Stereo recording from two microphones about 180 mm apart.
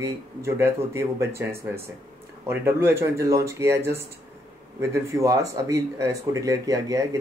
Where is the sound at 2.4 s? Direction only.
15° right (ahead or behind).